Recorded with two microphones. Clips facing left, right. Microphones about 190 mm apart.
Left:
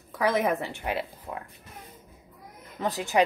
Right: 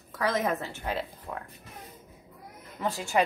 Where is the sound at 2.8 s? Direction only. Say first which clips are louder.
Left 2 dB; 20° left (ahead or behind).